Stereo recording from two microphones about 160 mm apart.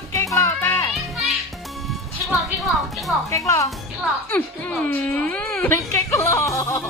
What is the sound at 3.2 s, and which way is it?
Speech, 20° left (ahead or behind).